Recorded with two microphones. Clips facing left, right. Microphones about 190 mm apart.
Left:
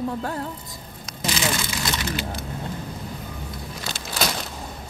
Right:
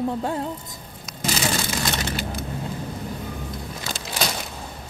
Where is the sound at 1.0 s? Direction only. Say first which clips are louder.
Even; 45° right (ahead or behind).